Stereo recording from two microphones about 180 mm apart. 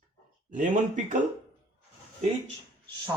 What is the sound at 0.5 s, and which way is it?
Speech, 45° right (ahead or behind).